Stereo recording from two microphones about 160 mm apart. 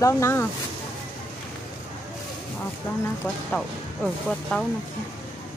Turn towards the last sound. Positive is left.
turn(degrees=5)  # may be behind; listen again after turning